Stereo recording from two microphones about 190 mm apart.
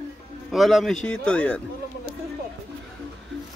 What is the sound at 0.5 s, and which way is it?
Speech, centre (ahead or behind).